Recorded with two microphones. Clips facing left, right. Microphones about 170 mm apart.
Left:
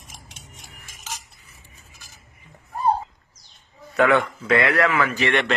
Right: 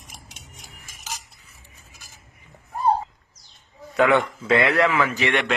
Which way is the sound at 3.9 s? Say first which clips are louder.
Even; 20° right (ahead or behind).